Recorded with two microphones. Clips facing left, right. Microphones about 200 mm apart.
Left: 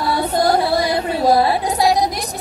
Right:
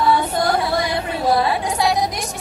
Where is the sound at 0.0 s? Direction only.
35° left (ahead or behind).